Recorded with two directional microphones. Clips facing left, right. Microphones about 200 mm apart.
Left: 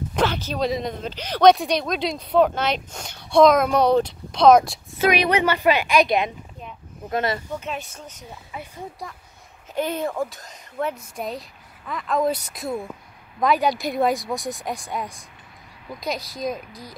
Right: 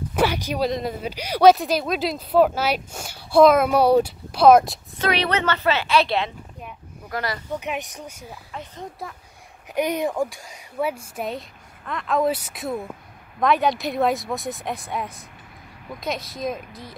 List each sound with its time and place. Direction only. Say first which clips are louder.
0.1 s a sound: right 2 dB; 10° right (ahead or behind)
0.7 s speech: even; centre (ahead or behind)
4.9 s a woman's voice: left 3 dB; 10° left (ahead or behind)
7.5 s speech: right 2 dB; 15° right (ahead or behind)
9.8 s speech: right 2 dB; 15° right (ahead or behind)